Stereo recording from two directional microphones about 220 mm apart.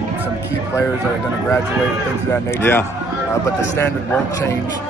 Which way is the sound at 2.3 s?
10° left (ahead or behind).